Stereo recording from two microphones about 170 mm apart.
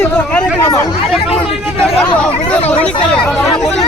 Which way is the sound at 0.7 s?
20° left (ahead or behind).